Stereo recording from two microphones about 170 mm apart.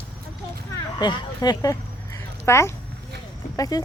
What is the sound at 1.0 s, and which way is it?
Speech, 25° left (ahead or behind).